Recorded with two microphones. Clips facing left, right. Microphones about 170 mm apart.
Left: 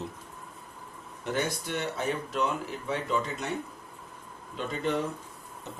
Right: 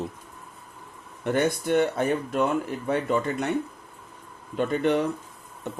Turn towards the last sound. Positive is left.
turn(degrees=-65)  # may be behind; listen again after turning